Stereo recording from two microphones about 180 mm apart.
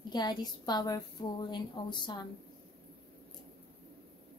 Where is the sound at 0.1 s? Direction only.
25° left (ahead or behind).